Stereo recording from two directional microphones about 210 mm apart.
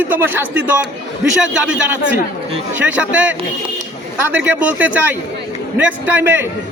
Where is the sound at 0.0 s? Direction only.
10° right (ahead or behind).